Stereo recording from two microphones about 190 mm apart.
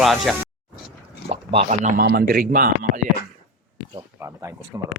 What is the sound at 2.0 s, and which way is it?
Speech, 55° right (ahead or behind).